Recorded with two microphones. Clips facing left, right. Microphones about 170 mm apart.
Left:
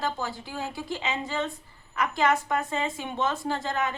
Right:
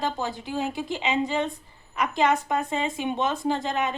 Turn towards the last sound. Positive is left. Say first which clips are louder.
# right 3 dB
turn(degrees=-20)  # may be behind; listen again after turning